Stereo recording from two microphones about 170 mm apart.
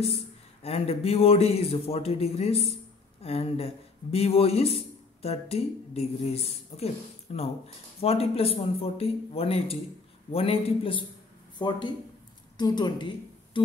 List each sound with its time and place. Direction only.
0.0 s a woman's voice: 35° left (ahead or behind)